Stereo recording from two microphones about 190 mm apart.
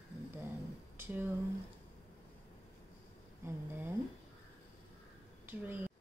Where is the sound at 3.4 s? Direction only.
10° right (ahead or behind).